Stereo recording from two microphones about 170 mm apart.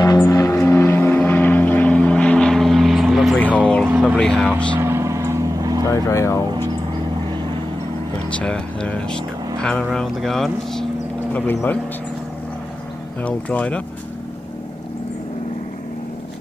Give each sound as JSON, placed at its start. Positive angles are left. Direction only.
{"t": 0.0, "sound": "vehicle", "side_deg": 20}
{"t": 3.8, "sound": "a sound", "side_deg": -5}
{"t": 4.2, "sound": "speech", "side_deg": 5}
{"t": 4.7, "sound": "vehicle", "side_deg": -15}
{"t": 5.9, "sound": "speech", "side_deg": 20}
{"t": 8.3, "sound": "speech", "side_deg": 5}
{"t": 13.2, "sound": "speech", "side_deg": 10}